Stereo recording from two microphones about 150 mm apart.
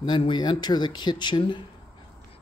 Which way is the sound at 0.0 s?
30° left (ahead or behind).